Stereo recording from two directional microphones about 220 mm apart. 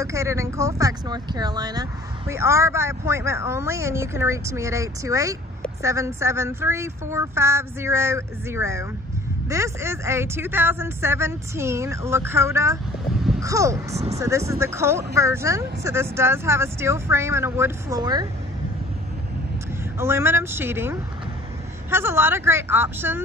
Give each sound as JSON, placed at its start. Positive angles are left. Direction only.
{"t": 0.0, "sound": "speech", "side_deg": -15}
{"t": 13.9, "sound": "speech", "side_deg": -30}
{"t": 14.2, "sound": "speech", "side_deg": -15}
{"t": 20.0, "sound": "speech", "side_deg": -10}